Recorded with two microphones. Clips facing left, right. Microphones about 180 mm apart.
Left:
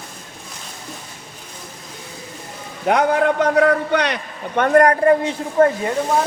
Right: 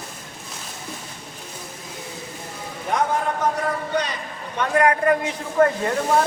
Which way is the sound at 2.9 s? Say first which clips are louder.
Left 7 dB; 75° left (ahead or behind).